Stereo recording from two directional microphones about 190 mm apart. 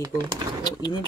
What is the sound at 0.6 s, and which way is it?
Speech, 20° left (ahead or behind).